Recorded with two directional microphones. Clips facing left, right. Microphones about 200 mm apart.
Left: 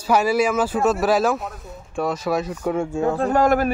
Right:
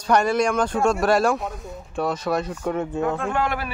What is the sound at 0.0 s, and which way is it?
Speech, 5° left (ahead or behind).